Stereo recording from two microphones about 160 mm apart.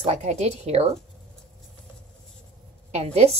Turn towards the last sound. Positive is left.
turn(degrees=-40)  # may be behind; listen again after turning